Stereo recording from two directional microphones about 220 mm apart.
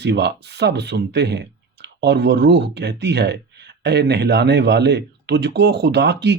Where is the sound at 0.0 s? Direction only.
50° right (ahead or behind).